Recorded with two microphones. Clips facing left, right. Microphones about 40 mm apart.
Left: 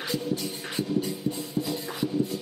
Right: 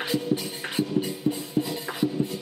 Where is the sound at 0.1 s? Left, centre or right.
Right.